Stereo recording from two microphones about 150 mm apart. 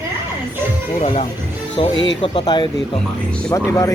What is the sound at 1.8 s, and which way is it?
Speech, 35° left (ahead or behind).